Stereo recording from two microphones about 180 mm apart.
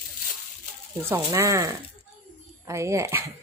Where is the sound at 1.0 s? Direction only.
15° right (ahead or behind).